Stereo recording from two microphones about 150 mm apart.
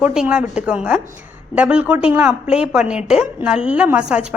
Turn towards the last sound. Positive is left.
turn(degrees=-5)  # may be behind; listen again after turning